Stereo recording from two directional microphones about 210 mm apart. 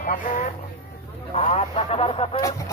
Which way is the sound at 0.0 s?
40° left (ahead or behind).